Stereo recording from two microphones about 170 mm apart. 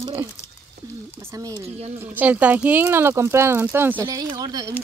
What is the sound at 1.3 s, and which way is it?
Speech, 20° right (ahead or behind).